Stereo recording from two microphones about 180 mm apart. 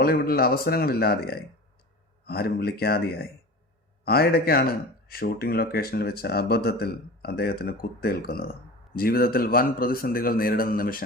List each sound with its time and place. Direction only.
0.0 s speech: 55° left (ahead or behind)